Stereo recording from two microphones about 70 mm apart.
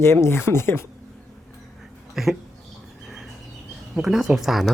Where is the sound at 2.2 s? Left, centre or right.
Centre.